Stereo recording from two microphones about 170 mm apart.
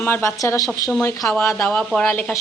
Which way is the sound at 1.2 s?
5° left (ahead or behind).